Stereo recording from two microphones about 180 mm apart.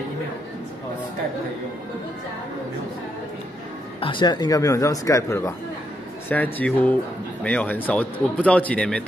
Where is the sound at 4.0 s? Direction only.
25° left (ahead or behind); by 9.0 s 5° left (ahead or behind).